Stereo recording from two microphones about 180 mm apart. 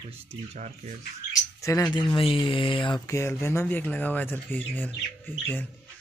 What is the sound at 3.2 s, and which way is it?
Speech, 15° left (ahead or behind).